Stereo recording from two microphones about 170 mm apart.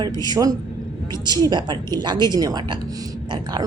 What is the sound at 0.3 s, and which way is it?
Speech, 20° right (ahead or behind).